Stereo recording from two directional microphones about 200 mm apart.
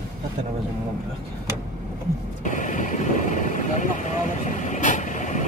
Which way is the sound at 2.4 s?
40° left (ahead or behind).